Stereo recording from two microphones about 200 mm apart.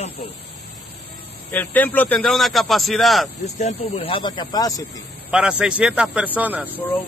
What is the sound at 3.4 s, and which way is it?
Speech, 35° left (ahead or behind).